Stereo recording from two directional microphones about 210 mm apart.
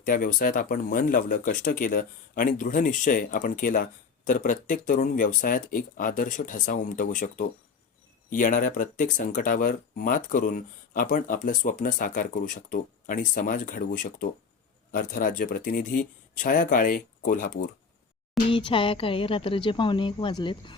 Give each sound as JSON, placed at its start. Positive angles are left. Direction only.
{"t": 0.0, "sound": "speech", "side_deg": 40}
{"t": 18.4, "sound": "speech", "side_deg": 25}